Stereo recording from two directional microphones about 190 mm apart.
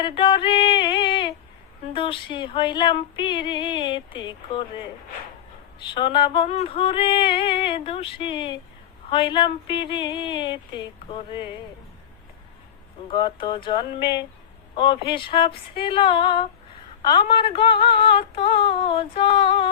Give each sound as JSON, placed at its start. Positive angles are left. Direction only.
{"t": 0.0, "sound": "music", "side_deg": 25}
{"t": 1.9, "sound": "female singing", "side_deg": 25}
{"t": 9.0, "sound": "speech", "side_deg": 25}
{"t": 9.9, "sound": "female singing", "side_deg": 25}
{"t": 13.1, "sound": "female singing", "side_deg": 25}